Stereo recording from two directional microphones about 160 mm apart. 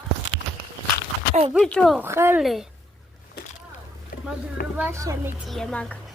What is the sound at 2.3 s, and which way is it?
Speech, centre (ahead or behind).